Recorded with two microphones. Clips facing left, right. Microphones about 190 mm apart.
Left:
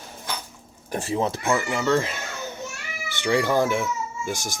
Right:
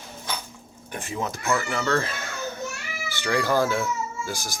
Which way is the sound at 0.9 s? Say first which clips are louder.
Left 6 dB; 35° left (ahead or behind).